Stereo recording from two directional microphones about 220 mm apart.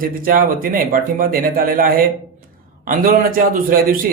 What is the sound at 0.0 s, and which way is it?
Speech, 40° right (ahead or behind).